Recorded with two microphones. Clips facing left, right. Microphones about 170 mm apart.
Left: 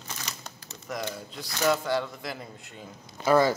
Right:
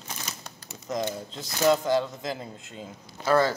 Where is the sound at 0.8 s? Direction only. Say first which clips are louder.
Right 4 dB; 20° right (ahead or behind).